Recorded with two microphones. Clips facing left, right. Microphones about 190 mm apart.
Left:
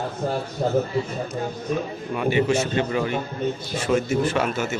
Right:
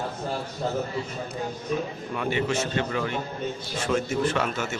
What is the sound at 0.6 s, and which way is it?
Speech, 45° left (ahead or behind).